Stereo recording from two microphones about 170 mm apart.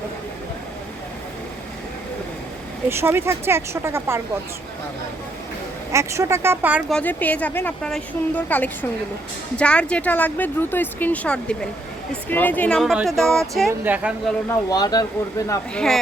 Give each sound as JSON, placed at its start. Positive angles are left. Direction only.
{"t": 2.9, "sound": "speech", "side_deg": -15}
{"t": 5.9, "sound": "speech", "side_deg": -15}
{"t": 6.9, "sound": "speech", "side_deg": 10}
{"t": 13.7, "sound": "speech", "side_deg": -10}
{"t": 14.5, "sound": "speech", "side_deg": 20}
{"t": 15.7, "sound": "speech", "side_deg": 5}